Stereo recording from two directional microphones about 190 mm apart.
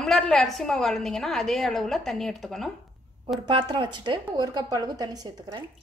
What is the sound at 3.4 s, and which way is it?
A woman's voice, 25° right (ahead or behind).